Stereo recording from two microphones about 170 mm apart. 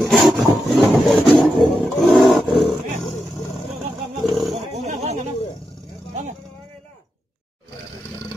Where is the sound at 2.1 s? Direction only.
Centre (ahead or behind).